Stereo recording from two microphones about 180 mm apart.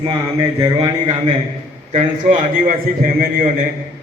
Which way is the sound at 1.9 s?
40° right (ahead or behind).